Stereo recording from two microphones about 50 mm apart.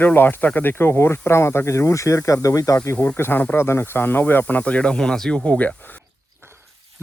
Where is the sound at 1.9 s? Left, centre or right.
Left.